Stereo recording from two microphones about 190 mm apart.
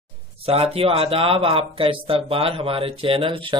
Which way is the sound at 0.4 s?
30° right (ahead or behind).